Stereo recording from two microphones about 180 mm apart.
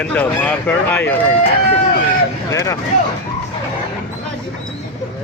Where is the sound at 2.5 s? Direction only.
20° left (ahead or behind).